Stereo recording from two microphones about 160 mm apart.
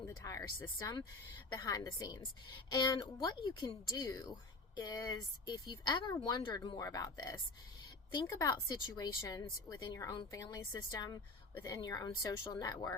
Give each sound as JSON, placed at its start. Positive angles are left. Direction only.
{"t": 0.0, "sound": "speech", "side_deg": 20}